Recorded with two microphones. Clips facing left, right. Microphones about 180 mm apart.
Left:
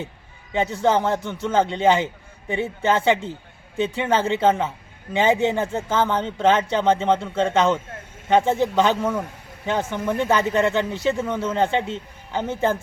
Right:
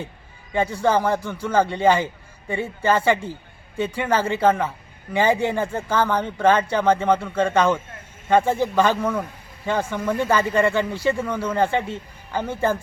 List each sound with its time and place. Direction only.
0.5 s speech: 20° left (ahead or behind)